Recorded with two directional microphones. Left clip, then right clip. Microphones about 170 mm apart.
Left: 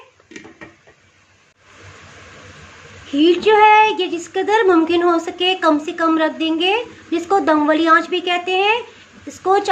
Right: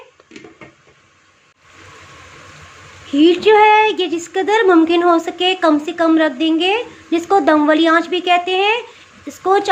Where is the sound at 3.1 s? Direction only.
15° right (ahead or behind).